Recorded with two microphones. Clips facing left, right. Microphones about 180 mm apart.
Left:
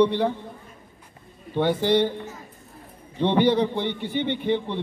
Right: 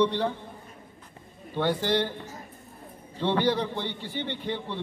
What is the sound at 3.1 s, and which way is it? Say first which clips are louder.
A man's voice: left 5 dB; 20° left (ahead or behind).